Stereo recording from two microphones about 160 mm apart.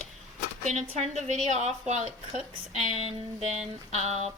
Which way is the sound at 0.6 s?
45° right (ahead or behind).